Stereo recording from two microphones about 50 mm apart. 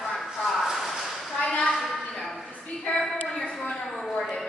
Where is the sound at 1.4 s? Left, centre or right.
Centre.